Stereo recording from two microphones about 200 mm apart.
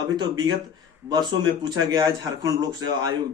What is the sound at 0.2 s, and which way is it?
Speech, 20° right (ahead or behind).